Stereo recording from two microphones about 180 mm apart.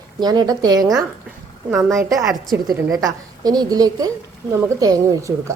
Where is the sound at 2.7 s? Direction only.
20° right (ahead or behind).